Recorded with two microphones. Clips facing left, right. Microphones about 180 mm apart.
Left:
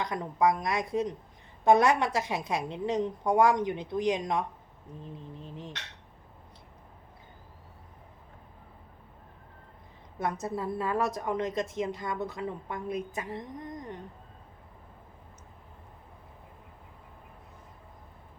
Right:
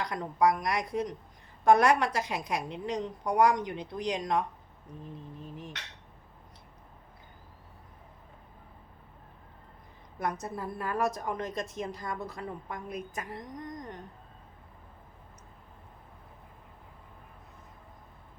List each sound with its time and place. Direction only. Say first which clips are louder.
0.0 s a woman's voice: even; 25° left (ahead or behind)
10.2 s a woman's voice: left 2 dB; 25° left (ahead or behind)